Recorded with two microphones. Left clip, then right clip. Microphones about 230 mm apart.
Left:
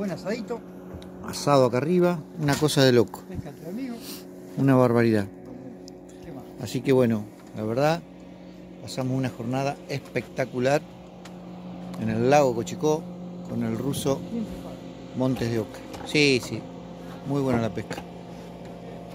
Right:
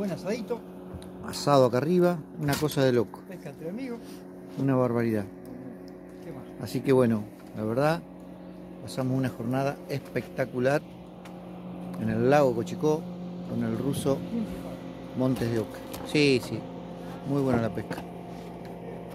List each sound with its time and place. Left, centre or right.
0.0 s speech: centre
1.2 s a man's voice: centre
2.4 s speech: left
4.6 s speech: left
6.6 s a man's voice: centre
11.9 s a man's voice: centre